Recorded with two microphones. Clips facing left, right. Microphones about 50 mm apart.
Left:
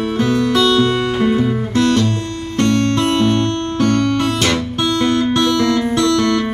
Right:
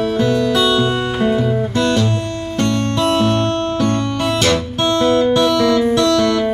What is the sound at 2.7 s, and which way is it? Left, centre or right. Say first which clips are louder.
Music: left 3 dB; left.